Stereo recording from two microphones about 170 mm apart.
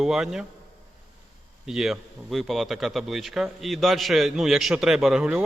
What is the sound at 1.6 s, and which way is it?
A man's voice, centre (ahead or behind).